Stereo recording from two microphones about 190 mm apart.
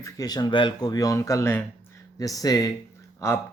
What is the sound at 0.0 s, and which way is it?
Speech, 20° left (ahead or behind).